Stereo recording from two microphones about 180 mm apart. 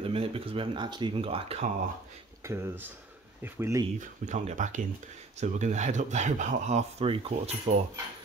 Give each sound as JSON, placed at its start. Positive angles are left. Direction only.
{"t": 0.0, "sound": "speech", "side_deg": -30}
{"t": 2.4, "sound": "speech", "side_deg": -15}
{"t": 4.0, "sound": "speech", "side_deg": -45}